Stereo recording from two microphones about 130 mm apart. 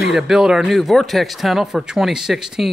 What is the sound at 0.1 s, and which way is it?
Speech, 5° right (ahead or behind).